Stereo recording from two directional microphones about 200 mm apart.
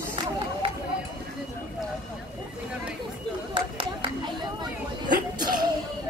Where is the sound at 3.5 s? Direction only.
25° right (ahead or behind).